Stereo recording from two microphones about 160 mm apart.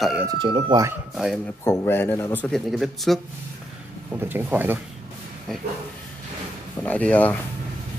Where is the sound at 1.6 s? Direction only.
20° left (ahead or behind); by 3.2 s centre (ahead or behind).